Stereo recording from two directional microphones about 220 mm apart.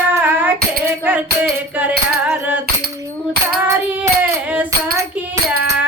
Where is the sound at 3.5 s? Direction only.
10° right (ahead or behind).